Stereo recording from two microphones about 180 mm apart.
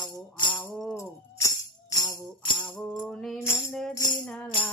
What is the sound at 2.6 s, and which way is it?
Music, 5° left (ahead or behind).